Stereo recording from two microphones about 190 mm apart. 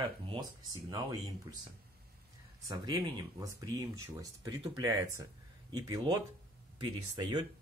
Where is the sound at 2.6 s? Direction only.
20° right (ahead or behind).